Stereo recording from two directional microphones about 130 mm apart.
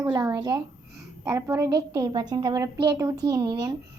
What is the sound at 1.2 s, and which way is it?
A woman's voice, 25° right (ahead or behind).